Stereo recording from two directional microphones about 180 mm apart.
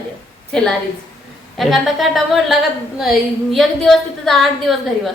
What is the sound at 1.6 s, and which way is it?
A woman's voice, centre (ahead or behind).